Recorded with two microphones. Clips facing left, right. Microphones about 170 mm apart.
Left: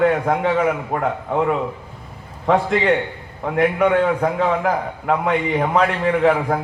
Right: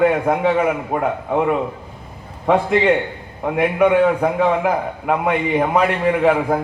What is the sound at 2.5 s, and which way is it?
A man's voice, 5° right (ahead or behind).